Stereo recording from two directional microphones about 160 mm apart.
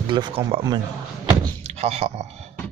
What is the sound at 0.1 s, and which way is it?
A man's voice, 30° right (ahead or behind).